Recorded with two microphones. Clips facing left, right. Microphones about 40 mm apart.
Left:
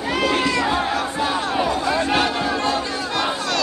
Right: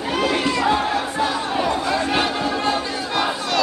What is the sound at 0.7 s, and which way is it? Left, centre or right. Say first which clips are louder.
Battle cry: right 1 dB; centre.